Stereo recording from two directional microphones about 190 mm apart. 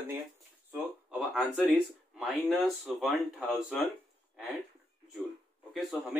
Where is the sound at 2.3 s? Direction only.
Centre (ahead or behind).